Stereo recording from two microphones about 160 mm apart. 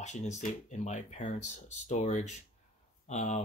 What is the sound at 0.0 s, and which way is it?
Speech, 45° left (ahead or behind).